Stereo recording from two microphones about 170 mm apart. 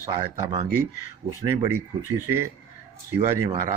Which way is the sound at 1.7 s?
15° right (ahead or behind).